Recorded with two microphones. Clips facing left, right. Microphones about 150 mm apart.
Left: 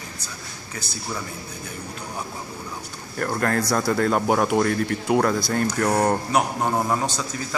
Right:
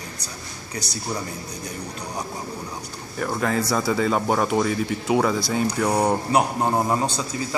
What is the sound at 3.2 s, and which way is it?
A man's voice, centre (ahead or behind).